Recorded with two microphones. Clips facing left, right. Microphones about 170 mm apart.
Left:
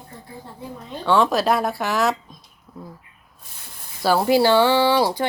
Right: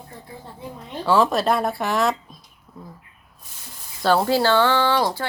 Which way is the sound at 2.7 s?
Centre (ahead or behind).